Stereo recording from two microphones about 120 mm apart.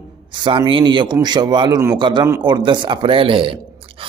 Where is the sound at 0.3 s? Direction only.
45° right (ahead or behind).